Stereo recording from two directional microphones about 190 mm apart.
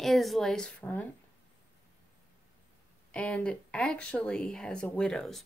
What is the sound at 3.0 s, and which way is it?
Speech, 5° left (ahead or behind).